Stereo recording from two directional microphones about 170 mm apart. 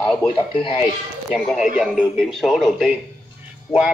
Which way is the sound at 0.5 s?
30° left (ahead or behind).